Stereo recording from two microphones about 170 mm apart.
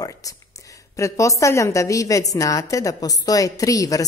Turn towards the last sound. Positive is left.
turn(degrees=20)  # may be behind; listen again after turning